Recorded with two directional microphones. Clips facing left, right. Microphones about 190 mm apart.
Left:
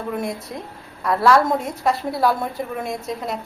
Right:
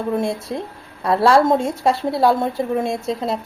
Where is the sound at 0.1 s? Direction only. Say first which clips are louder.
Right 5 dB; 30° right (ahead or behind).